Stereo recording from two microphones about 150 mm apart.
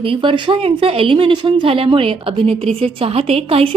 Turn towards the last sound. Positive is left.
turn(degrees=-40)  # may be behind; listen again after turning